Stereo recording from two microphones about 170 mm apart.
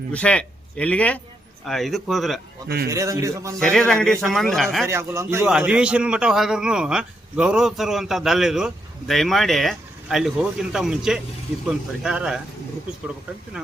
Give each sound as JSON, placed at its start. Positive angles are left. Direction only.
{"t": 0.1, "sound": "a man's voice", "side_deg": 5}
{"t": 2.9, "sound": "a man's voice", "side_deg": -20}
{"t": 3.6, "sound": "a man's voice", "side_deg": 5}
{"t": 4.9, "sound": "a man's voice", "side_deg": -15}
{"t": 5.5, "sound": "a man's voice", "side_deg": -5}